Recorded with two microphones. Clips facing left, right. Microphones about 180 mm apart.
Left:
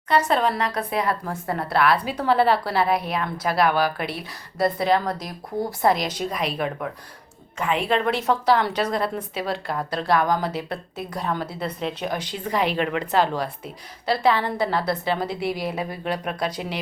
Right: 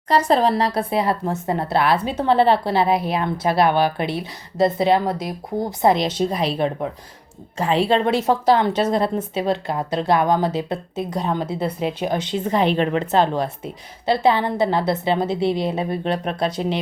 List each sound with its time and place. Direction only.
0.3 s a woman's voice: 35° right (ahead or behind)
11.8 s speech: 5° right (ahead or behind)
12.0 s a woman's voice: 25° right (ahead or behind)